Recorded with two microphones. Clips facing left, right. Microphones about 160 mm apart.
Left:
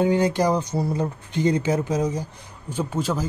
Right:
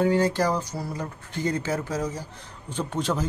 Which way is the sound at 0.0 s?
15° left (ahead or behind).